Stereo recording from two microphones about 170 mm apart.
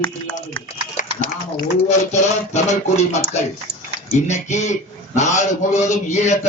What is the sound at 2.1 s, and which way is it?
A man's voice, 45° left (ahead or behind).